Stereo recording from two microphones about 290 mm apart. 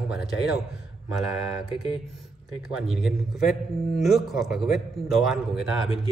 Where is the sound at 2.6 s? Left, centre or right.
Centre.